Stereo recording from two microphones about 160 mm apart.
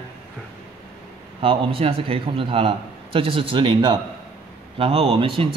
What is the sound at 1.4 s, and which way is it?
A man's voice, 35° right (ahead or behind).